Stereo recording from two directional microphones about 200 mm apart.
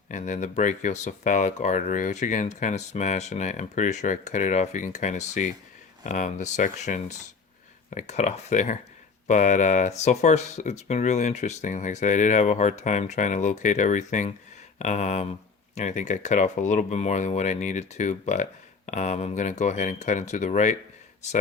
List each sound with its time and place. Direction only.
0.1 s speech: 40° left (ahead or behind)